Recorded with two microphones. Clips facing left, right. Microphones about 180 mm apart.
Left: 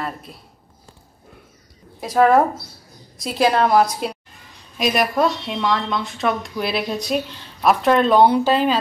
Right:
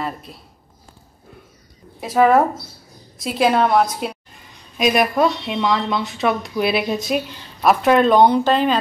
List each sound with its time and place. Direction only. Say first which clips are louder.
0.0 s speech: right 2 dB; centre (ahead or behind)
2.0 s speech: even; 5° right (ahead or behind)